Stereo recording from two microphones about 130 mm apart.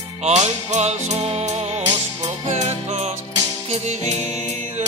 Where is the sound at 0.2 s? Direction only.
60° right (ahead or behind).